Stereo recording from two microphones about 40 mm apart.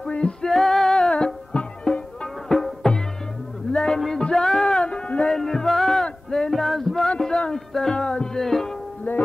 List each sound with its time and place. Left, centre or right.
0.1 s music: left
0.5 s music: centre
1.1 s music: left
2.4 s music: centre
4.8 s a sound: left
5.3 s music: centre
6.3 s male singing: centre
7.5 s music: centre
8.4 s music: centre
9.1 s music: left